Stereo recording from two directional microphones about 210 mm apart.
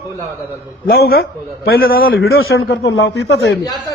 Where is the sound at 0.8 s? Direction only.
45° left (ahead or behind).